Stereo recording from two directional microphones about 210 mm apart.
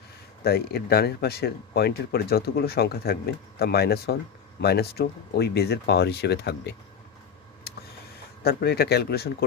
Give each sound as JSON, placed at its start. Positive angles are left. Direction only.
{"t": 0.4, "sound": "speech", "side_deg": 50}
{"t": 8.4, "sound": "speech", "side_deg": 50}